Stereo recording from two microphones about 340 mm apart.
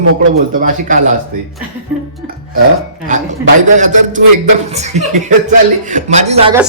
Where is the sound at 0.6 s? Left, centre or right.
Right.